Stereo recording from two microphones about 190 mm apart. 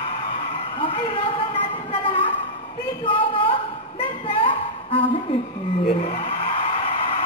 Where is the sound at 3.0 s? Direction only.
30° left (ahead or behind).